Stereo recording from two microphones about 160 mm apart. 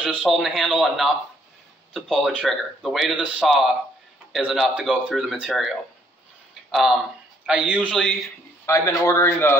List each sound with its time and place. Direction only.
0.0 s a man's voice: 5° right (ahead or behind)
8.6 s a man's voice: 20° left (ahead or behind)